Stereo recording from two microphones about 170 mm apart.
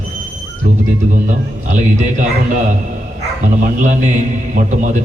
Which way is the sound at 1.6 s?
45° right (ahead or behind).